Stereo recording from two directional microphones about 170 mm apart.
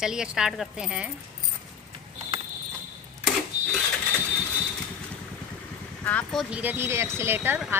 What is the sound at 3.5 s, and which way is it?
Mechanisms, 45° right (ahead or behind).